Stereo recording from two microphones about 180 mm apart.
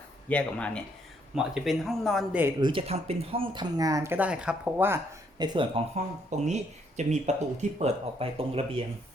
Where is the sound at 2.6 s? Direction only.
30° right (ahead or behind); by 5.0 s 10° right (ahead or behind).